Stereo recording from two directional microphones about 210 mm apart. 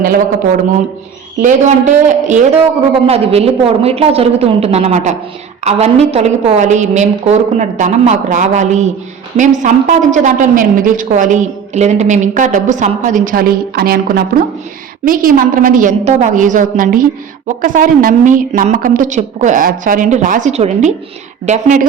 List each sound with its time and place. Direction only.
1.4 s a woman's voice: 35° right (ahead or behind)